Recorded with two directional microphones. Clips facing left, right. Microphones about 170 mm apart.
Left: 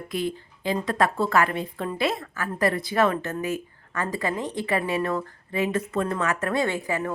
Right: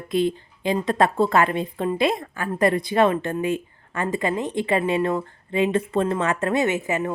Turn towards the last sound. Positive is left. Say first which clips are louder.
# right 3 dB
turn(degrees=-20)  # may be behind; listen again after turning